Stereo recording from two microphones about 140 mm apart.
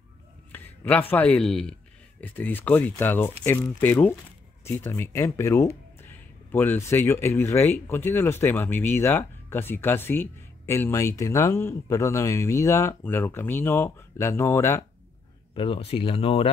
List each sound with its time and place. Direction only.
0.5 s speech: 10° left (ahead or behind)
15.5 s speech: 40° left (ahead or behind)